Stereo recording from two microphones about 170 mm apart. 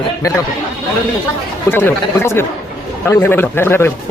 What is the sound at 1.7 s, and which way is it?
A man's voice, 15° left (ahead or behind).